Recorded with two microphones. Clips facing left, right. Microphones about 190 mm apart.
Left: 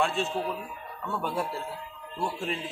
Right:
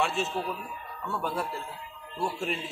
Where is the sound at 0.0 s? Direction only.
5° right (ahead or behind).